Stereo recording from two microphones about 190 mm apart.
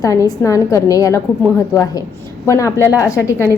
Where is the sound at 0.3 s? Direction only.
15° left (ahead or behind).